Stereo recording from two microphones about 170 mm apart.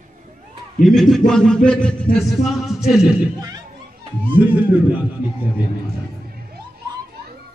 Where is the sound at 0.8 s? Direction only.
Centre (ahead or behind).